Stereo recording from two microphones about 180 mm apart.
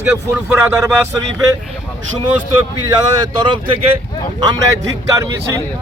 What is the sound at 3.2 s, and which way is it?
Speech, 25° right (ahead or behind).